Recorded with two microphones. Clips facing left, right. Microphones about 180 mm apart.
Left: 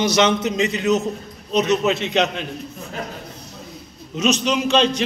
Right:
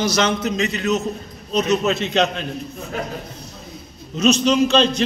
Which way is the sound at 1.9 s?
15° left (ahead or behind).